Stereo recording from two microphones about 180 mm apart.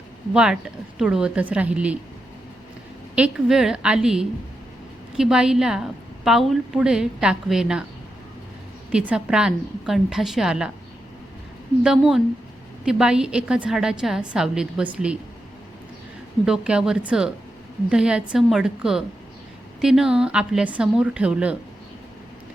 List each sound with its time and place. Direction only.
0.3 s a woman's voice: 5° right (ahead or behind)
3.2 s a woman's voice: 5° right (ahead or behind)
8.9 s a woman's voice: 5° right (ahead or behind)
11.8 s a woman's voice: 5° right (ahead or behind)
16.5 s a woman's voice: 5° right (ahead or behind)